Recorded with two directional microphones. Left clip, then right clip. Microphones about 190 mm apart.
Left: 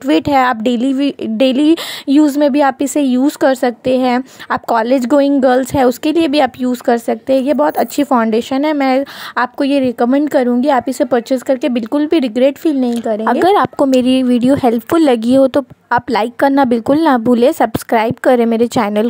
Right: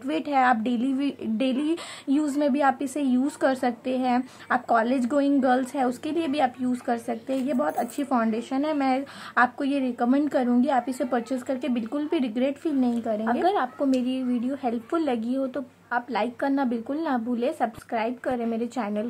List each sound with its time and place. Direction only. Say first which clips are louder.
0.0 s speech: left 11 dB; 45° left (ahead or behind)
13.8 s speech: left 14 dB; 45° left (ahead or behind)